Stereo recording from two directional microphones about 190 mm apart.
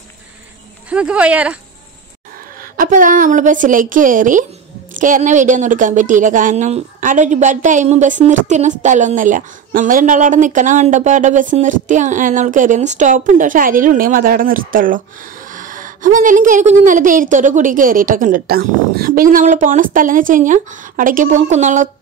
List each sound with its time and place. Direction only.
0.8 s speech: 5° right (ahead or behind)
2.8 s a woman's voice: 45° right (ahead or behind)